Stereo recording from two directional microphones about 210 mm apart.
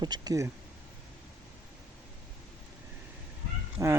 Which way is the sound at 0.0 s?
20° right (ahead or behind).